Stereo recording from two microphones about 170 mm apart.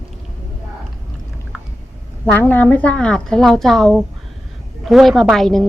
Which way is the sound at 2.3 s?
10° left (ahead or behind).